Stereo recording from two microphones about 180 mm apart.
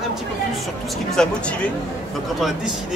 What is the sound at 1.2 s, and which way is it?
Speech, 5° left (ahead or behind).